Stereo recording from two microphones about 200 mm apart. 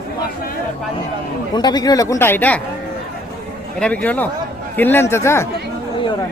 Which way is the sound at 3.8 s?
5° left (ahead or behind).